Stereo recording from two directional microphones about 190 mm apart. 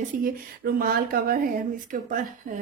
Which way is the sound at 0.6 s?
55° right (ahead or behind).